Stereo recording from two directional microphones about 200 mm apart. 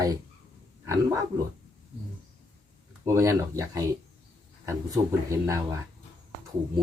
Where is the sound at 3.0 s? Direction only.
15° right (ahead or behind).